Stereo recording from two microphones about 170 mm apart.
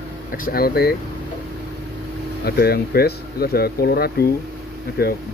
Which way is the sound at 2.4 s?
70° left (ahead or behind).